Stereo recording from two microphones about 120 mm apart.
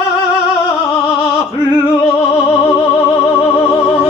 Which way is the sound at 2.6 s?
30° left (ahead or behind).